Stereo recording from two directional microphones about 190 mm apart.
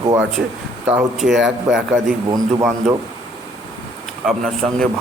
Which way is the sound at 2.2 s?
20° right (ahead or behind).